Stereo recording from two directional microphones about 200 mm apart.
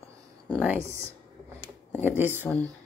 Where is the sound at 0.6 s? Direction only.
10° right (ahead or behind).